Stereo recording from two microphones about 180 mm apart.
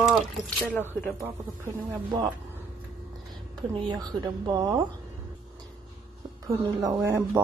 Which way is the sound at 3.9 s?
20° right (ahead or behind).